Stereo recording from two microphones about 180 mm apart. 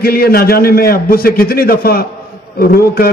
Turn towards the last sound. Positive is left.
turn(degrees=55)  # may be behind; listen again after turning